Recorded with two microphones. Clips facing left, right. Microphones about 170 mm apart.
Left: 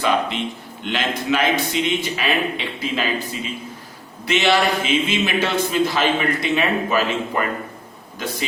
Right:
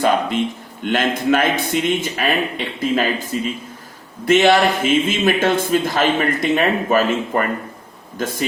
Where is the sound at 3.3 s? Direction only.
45° right (ahead or behind).